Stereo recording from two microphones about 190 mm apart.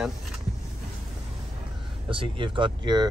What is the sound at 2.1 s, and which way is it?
Speech, 25° right (ahead or behind).